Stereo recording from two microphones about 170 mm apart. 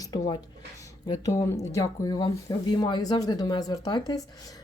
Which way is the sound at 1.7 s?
20° left (ahead or behind).